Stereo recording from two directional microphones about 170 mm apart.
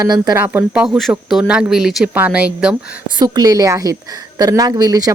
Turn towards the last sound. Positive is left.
turn(degrees=-20)  # may be behind; listen again after turning